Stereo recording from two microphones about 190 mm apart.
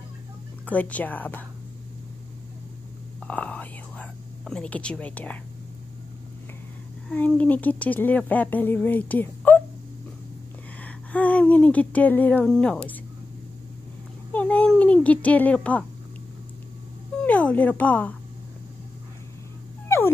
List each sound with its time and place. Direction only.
0.7 s speech: 10° left (ahead or behind)
3.2 s whispering: 5° left (ahead or behind)
7.1 s speech: 5° left (ahead or behind)
10.8 s a sound: 10° left (ahead or behind)
14.3 s a child's voice: 10° left (ahead or behind)
17.2 s speech: 5° left (ahead or behind)